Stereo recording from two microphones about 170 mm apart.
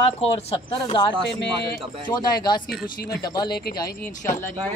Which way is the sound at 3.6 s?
60° left (ahead or behind).